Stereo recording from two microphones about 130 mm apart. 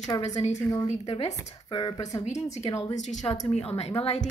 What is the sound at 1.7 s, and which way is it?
Speech, 35° left (ahead or behind).